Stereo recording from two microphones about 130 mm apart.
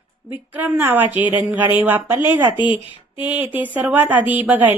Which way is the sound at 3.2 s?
15° right (ahead or behind).